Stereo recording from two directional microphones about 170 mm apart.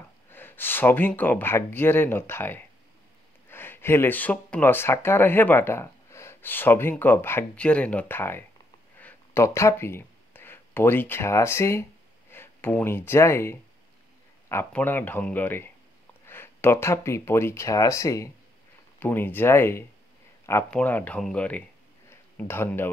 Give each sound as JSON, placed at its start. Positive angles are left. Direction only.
{"t": 0.3, "sound": "speech", "side_deg": 10}
{"t": 8.9, "sound": "a sound", "side_deg": 15}
{"t": 12.3, "sound": "speech", "side_deg": 15}